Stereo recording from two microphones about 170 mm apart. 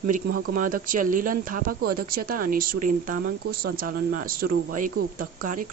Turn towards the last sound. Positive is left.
turn(degrees=-55)  # may be behind; listen again after turning